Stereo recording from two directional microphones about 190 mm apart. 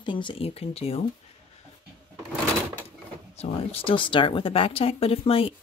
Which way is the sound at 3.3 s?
30° left (ahead or behind).